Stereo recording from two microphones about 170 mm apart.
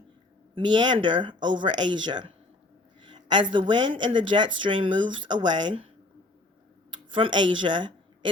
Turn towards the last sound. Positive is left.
turn(degrees=-30)  # may be behind; listen again after turning